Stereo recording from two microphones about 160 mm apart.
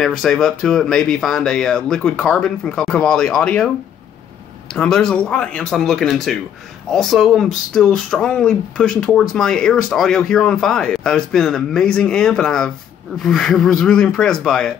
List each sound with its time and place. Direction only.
0.0 s speech: 5° left (ahead or behind)
4.7 s speech: 5° left (ahead or behind)